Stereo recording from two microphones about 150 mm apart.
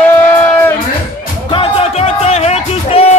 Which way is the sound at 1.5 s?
40° left (ahead or behind).